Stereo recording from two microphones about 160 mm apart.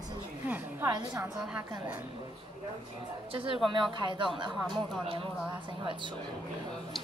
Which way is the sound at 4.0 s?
30° right (ahead or behind).